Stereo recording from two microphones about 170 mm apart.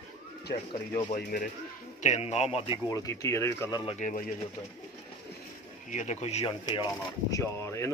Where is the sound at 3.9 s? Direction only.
50° left (ahead or behind).